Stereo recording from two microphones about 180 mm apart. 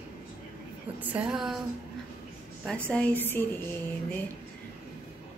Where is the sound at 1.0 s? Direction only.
10° right (ahead or behind).